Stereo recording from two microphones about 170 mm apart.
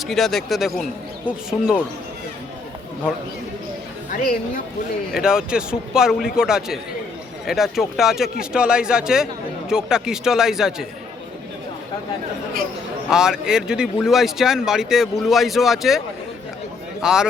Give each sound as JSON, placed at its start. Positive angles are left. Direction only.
{"t": 0.0, "sound": "speech", "side_deg": 0}
{"t": 4.1, "sound": "speech", "side_deg": 55}
{"t": 5.1, "sound": "speech", "side_deg": -5}
{"t": 13.1, "sound": "speech", "side_deg": -5}
{"t": 17.0, "sound": "speech", "side_deg": -5}